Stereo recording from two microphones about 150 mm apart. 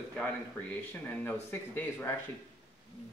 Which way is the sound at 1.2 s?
15° left (ahead or behind).